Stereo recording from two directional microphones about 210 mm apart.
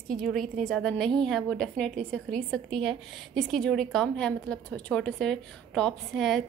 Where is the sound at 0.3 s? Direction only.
Centre (ahead or behind).